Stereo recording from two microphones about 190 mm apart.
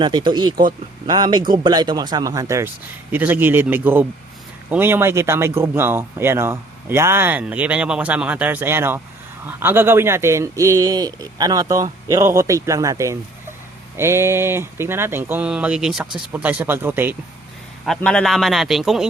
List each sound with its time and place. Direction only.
0.0 s speech: 25° right (ahead or behind)
17.8 s a man's voice: 5° left (ahead or behind)